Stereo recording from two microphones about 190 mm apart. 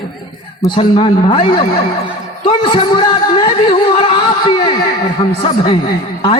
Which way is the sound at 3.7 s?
25° left (ahead or behind).